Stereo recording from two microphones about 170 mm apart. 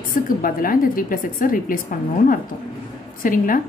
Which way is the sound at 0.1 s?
55° left (ahead or behind).